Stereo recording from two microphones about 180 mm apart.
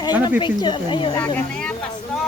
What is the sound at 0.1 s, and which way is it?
Speech, 10° right (ahead or behind).